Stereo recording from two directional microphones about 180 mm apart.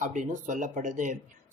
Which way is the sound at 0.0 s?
45° right (ahead or behind).